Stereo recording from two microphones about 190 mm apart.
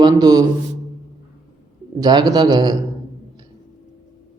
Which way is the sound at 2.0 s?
20° right (ahead or behind).